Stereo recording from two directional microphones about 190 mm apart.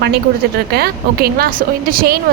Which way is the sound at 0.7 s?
55° right (ahead or behind).